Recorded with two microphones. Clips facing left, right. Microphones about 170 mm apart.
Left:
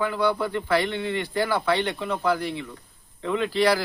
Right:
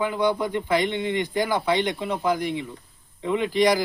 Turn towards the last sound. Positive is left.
turn(degrees=-15)  # may be behind; listen again after turning